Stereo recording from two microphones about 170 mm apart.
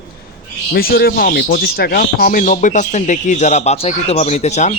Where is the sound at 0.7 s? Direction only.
60° left (ahead or behind); by 4.7 s 40° left (ahead or behind).